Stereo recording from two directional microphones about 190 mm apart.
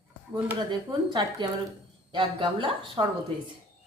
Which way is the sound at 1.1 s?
25° right (ahead or behind).